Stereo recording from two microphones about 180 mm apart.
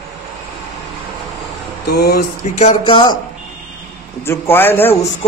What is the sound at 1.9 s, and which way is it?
Speech, 60° left (ahead or behind).